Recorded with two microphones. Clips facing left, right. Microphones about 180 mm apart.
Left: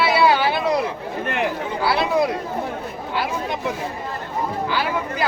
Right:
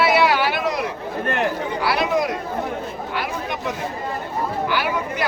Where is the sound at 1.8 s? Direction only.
25° left (ahead or behind).